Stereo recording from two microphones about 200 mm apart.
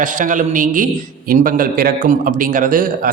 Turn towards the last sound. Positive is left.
turn(degrees=-45)  # may be behind; listen again after turning